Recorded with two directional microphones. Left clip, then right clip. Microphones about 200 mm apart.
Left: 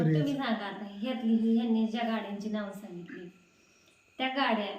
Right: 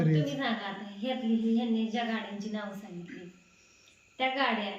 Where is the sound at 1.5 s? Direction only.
5° left (ahead or behind).